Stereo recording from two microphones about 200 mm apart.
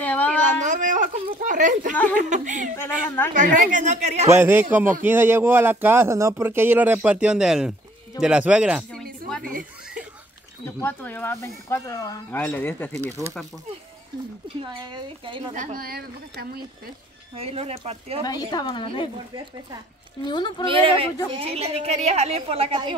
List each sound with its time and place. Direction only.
0.0 s a sound: 10° left (ahead or behind)
0.6 s a sound: 40° right (ahead or behind)
2.1 s speech: 40° right (ahead or behind)
4.3 s speech: 10° right (ahead or behind)
9.4 s speech: 45° right (ahead or behind)
10.6 s speech: 10° left (ahead or behind)
13.0 s speech: 15° right (ahead or behind)
14.6 s a woman's voice: 25° right (ahead or behind)
15.5 s speech: 40° right (ahead or behind)
17.4 s a woman's voice: 30° right (ahead or behind)
18.2 s a woman's voice: 20° left (ahead or behind)
20.2 s a woman's voice: 20° left (ahead or behind)
20.6 s a woman's voice: 25° right (ahead or behind)